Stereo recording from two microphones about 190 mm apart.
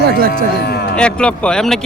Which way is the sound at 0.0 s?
55° right (ahead or behind).